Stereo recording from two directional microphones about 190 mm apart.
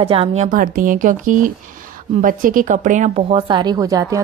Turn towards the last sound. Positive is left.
turn(degrees=-20)  # may be behind; listen again after turning